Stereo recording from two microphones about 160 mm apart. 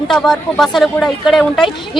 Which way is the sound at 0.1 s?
Centre (ahead or behind).